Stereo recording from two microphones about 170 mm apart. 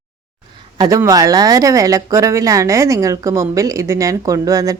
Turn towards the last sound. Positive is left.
turn(degrees=-20)  # may be behind; listen again after turning